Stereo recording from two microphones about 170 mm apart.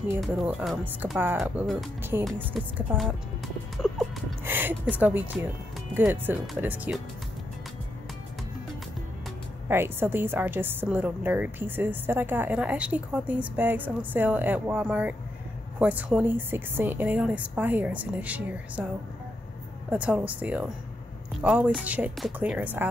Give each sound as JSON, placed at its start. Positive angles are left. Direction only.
{"t": 0.2, "sound": "speech", "side_deg": -5}
{"t": 2.1, "sound": "a woman's voice", "side_deg": -15}
{"t": 2.5, "sound": "speech", "side_deg": 0}
{"t": 4.5, "sound": "a woman's voice", "side_deg": -10}
{"t": 9.7, "sound": "a woman's voice", "side_deg": -15}
{"t": 19.9, "sound": "a woman's voice", "side_deg": -10}